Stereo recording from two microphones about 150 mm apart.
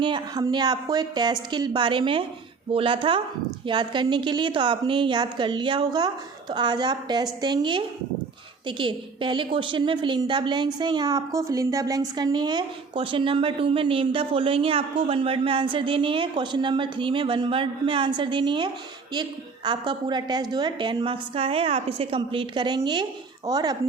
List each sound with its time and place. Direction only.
0.0 s a woman's voice: 30° right (ahead or behind)